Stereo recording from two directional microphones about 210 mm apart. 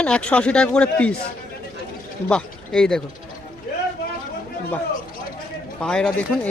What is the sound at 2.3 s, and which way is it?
Speech, 5° left (ahead or behind).